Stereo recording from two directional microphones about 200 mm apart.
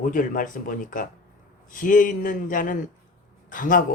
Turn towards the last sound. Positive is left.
turn(degrees=45)  # may be behind; listen again after turning